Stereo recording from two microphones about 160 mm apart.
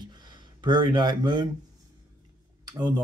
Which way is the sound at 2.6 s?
25° right (ahead or behind).